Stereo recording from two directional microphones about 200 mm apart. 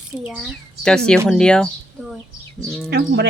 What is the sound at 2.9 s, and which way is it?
Speech, 55° right (ahead or behind).